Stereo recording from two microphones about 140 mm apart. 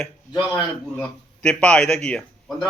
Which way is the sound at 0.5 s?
10° left (ahead or behind).